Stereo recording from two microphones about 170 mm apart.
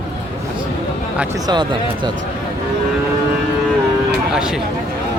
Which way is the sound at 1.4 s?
25° right (ahead or behind).